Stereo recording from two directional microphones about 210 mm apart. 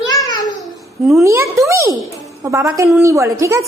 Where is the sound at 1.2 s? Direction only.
15° right (ahead or behind).